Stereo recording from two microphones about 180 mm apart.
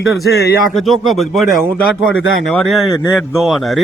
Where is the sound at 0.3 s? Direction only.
60° left (ahead or behind).